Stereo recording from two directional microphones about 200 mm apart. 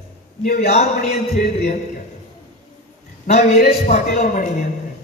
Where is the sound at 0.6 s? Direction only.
35° left (ahead or behind).